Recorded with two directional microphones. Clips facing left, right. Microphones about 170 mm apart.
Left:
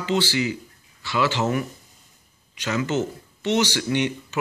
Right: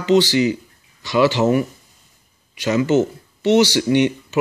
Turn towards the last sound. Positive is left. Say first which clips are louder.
# right 7 dB
turn(degrees=-15)  # may be behind; listen again after turning